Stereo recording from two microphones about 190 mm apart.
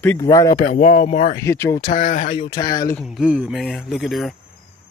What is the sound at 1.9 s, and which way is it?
Speech, 40° left (ahead or behind).